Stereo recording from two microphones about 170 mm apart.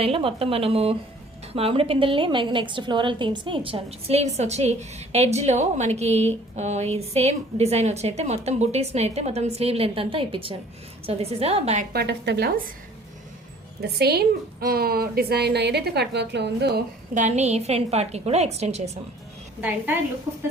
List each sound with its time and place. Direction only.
0.0 s a woman's voice: 35° right (ahead or behind)
11.9 s a woman's voice: 80° right
13.8 s a woman's voice: 70° right (ahead or behind)
17.2 s a woman's voice: 45° right (ahead or behind)
19.6 s a woman's voice: 10° right (ahead or behind)